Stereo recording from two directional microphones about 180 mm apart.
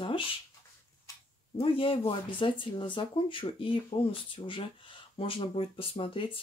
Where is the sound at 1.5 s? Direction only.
30° left (ahead or behind).